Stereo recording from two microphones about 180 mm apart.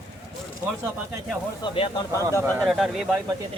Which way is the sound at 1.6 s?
30° left (ahead or behind).